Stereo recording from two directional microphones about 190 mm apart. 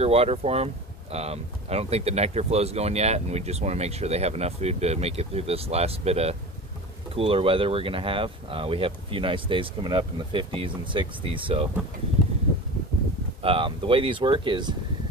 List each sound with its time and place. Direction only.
0.0 s speech: 30° right (ahead or behind)
13.4 s speech: 30° right (ahead or behind)